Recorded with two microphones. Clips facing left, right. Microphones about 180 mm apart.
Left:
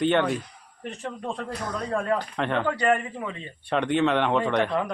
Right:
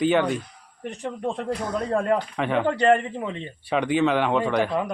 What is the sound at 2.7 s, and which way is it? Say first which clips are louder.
Speech: right 7 dB; 30° right (ahead or behind).